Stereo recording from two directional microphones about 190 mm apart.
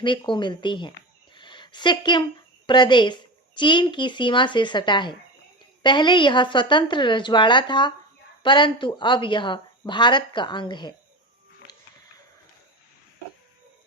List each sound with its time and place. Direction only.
0.0 s speech: 25° left (ahead or behind)
1.4 s a sound: 25° left (ahead or behind)
2.6 s speech: 25° left (ahead or behind)